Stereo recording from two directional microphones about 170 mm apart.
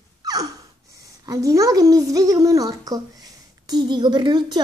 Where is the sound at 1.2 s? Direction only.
20° right (ahead or behind).